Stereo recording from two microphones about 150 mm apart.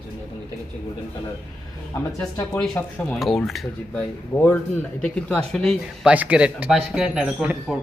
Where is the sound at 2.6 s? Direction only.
5° left (ahead or behind).